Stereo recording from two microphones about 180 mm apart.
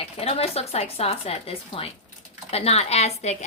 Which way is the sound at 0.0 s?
35° left (ahead or behind).